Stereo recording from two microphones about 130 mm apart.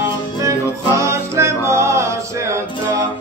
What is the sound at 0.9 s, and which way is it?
Music, 20° right (ahead or behind).